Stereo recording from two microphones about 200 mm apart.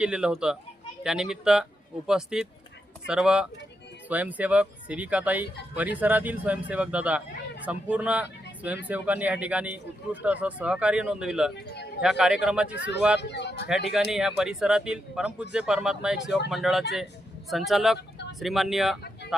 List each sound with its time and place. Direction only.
0.0 s speech: 5° right (ahead or behind)
11.7 s a sound: 55° left (ahead or behind)
12.0 s speech: 5° right (ahead or behind)
13.1 s speech: 60° left (ahead or behind)
13.7 s speech: centre (ahead or behind)